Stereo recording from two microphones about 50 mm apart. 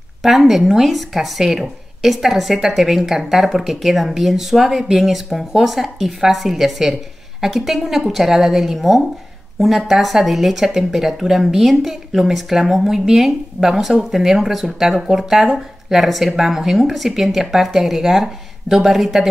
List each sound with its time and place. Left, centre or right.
0.2 s speech: centre